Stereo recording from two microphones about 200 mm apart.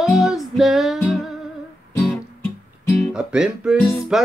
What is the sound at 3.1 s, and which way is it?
Speech, 5° right (ahead or behind).